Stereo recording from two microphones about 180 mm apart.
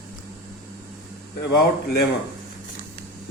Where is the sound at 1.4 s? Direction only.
70° left (ahead or behind).